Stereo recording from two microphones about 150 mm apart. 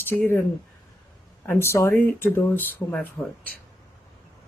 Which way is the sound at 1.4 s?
15° left (ahead or behind).